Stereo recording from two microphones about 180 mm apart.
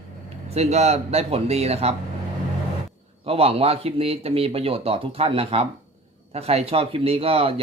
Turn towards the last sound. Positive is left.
turn(degrees=-30)  # may be behind; listen again after turning